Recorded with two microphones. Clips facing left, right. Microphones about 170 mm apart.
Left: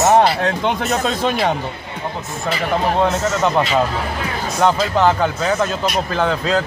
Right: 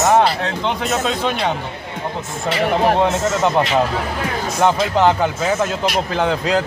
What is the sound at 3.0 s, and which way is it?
A man's voice, 20° right (ahead or behind).